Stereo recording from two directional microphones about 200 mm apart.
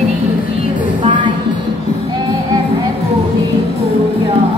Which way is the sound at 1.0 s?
25° right (ahead or behind).